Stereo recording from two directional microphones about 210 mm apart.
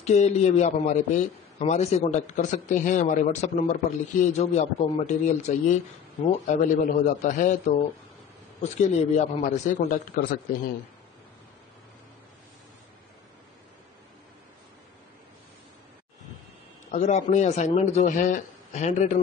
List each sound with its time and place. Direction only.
0.0 s a man's voice: 35° left (ahead or behind)
16.9 s a man's voice: 35° left (ahead or behind)